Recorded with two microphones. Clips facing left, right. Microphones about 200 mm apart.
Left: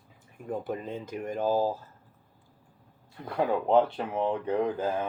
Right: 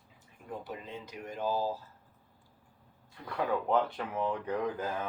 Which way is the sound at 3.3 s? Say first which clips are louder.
Left 6 dB; 30° left (ahead or behind).